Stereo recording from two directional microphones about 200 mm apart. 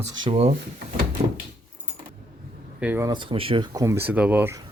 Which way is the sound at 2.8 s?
10° right (ahead or behind).